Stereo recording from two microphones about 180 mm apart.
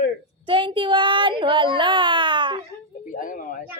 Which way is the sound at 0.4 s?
25° right (ahead or behind).